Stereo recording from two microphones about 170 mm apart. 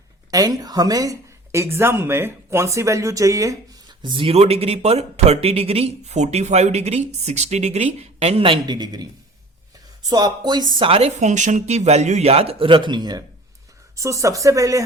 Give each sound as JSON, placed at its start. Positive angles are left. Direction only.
{"t": 0.3, "sound": "a woman's voice", "side_deg": -20}
{"t": 10.1, "sound": "a woman's voice", "side_deg": -25}